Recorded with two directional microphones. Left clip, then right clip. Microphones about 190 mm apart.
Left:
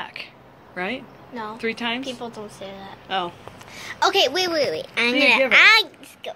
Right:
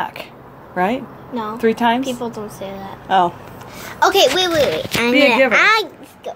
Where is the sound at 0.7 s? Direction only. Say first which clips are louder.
Right 9 dB; 40° right (ahead or behind).